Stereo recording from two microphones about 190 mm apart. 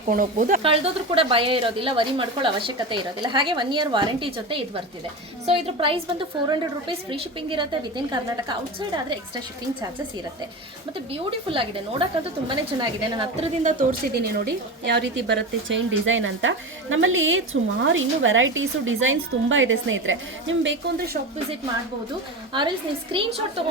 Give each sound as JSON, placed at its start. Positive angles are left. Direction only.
{"t": 0.1, "sound": "speech", "side_deg": -45}
{"t": 0.6, "sound": "a woman's voice", "side_deg": -30}
{"t": 11.1, "sound": "a woman's voice", "side_deg": -30}
{"t": 14.1, "sound": "a woman's voice", "side_deg": -60}
{"t": 22.5, "sound": "a woman's voice", "side_deg": -25}